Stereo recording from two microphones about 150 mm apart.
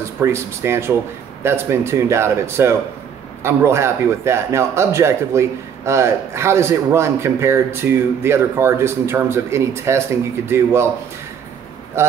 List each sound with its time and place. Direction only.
0.2 s a man's voice: 15° right (ahead or behind)
12.0 s speech: 15° right (ahead or behind)